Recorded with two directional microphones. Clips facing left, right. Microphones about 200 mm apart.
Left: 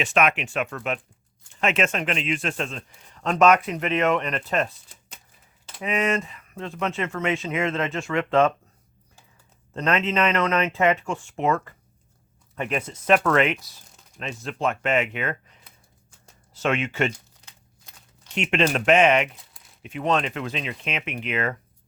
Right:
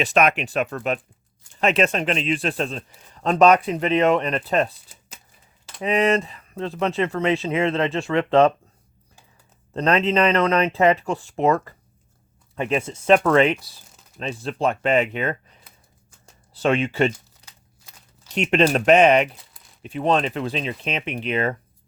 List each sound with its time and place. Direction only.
0.0 s speech: 40° right (ahead or behind)
4.9 s shuffling cards: 5° right (ahead or behind)
5.8 s speech: 35° right (ahead or behind)
9.7 s speech: 35° right (ahead or behind)
16.6 s speech: 35° right (ahead or behind)
17.4 s crumpling: 5° right (ahead or behind)
18.3 s speech: 35° right (ahead or behind)